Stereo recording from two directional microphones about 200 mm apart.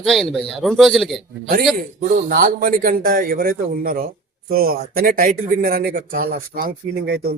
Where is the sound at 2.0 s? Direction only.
45° right (ahead or behind).